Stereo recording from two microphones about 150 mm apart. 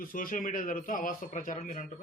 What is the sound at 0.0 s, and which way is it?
Speech, 65° left (ahead or behind).